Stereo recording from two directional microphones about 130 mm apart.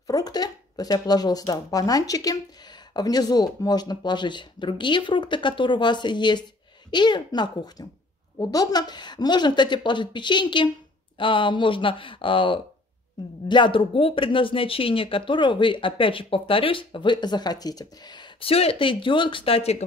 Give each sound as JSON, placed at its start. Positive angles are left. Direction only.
{"t": 0.0, "sound": "speech", "side_deg": 30}